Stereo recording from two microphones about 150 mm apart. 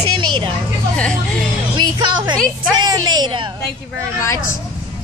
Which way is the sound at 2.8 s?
25° right (ahead or behind).